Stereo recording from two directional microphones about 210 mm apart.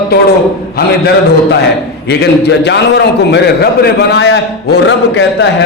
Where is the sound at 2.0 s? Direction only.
50° left (ahead or behind).